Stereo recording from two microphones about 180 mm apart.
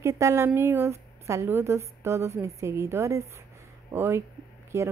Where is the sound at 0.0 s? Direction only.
15° right (ahead or behind).